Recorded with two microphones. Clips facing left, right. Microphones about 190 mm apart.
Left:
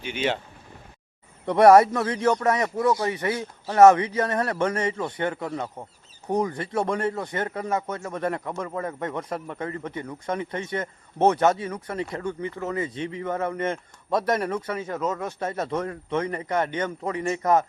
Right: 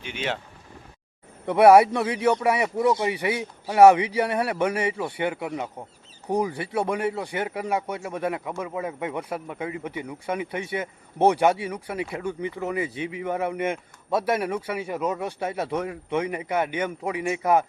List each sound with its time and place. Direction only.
0.0 s speech: centre (ahead or behind)
1.5 s speech: 5° right (ahead or behind)